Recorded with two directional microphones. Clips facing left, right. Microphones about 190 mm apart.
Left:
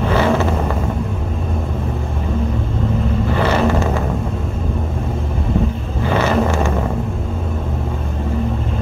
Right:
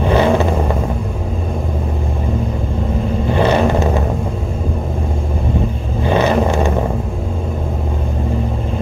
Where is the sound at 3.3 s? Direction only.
20° right (ahead or behind).